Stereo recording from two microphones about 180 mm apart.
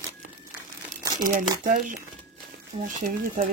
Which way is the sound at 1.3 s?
50° right (ahead or behind).